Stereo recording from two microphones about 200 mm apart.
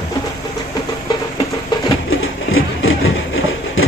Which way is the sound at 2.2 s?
85° left.